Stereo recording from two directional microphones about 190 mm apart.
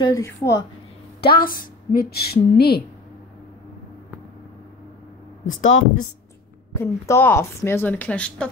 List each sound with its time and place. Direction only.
0.0 s a woman's voice: 15° left (ahead or behind)
1.2 s a woman's voice: 50° left (ahead or behind)
5.4 s speech: 90° left
6.7 s a woman's voice: 15° left (ahead or behind)